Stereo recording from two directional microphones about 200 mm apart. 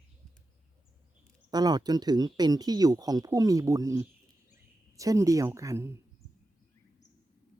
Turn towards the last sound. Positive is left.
turn(degrees=-15)  # may be behind; listen again after turning